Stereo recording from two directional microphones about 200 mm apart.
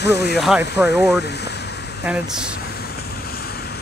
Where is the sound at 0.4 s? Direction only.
5° right (ahead or behind).